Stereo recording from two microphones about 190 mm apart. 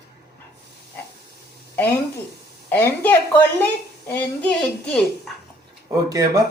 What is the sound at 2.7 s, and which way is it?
A woman's voice, 10° left (ahead or behind).